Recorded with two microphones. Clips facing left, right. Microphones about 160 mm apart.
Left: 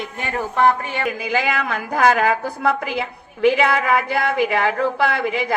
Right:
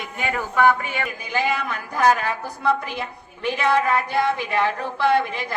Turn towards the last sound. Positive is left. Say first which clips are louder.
# even
turn(degrees=90)